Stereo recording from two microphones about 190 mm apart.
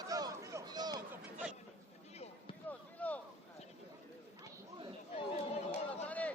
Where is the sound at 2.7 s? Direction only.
10° left (ahead or behind).